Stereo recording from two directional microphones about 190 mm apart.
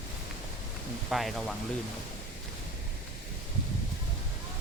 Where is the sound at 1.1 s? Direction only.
Centre (ahead or behind).